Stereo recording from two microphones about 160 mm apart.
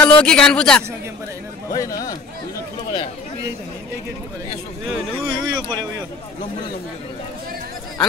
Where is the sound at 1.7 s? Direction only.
20° left (ahead or behind).